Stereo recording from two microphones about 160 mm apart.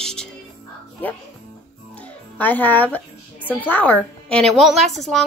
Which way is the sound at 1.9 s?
10° left (ahead or behind).